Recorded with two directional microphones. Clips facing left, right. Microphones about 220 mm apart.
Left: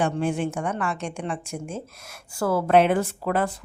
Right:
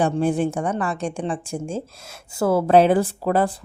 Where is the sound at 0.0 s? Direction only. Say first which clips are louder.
Right 4 dB; 35° right (ahead or behind).